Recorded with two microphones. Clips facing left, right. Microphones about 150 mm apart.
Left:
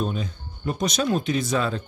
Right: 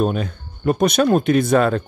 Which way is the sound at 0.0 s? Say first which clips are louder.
Right 7 dB; 65° right (ahead or behind).